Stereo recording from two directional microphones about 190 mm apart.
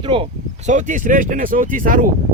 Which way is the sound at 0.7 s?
40° right (ahead or behind).